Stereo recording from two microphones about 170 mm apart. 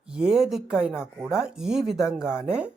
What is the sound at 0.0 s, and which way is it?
Speech, 5° right (ahead or behind).